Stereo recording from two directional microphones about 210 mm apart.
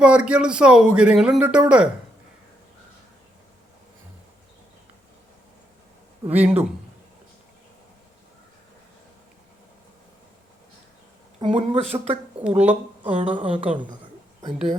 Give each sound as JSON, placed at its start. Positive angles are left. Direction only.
{"t": 0.0, "sound": "a man's voice", "side_deg": -5}
{"t": 6.2, "sound": "speech", "side_deg": -10}
{"t": 11.3, "sound": "speech", "side_deg": -25}
{"t": 12.4, "sound": "speech", "side_deg": -5}
{"t": 13.3, "sound": "speech", "side_deg": -25}